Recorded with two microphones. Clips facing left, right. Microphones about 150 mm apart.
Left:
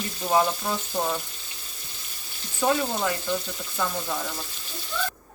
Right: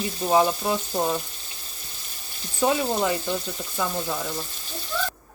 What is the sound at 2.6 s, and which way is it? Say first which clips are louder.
Speech: right 2 dB; 15° right (ahead or behind).